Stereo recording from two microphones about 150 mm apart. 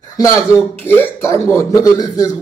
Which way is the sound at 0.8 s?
15° left (ahead or behind).